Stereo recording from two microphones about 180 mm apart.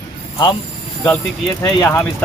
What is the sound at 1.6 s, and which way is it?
Speech, 20° left (ahead or behind).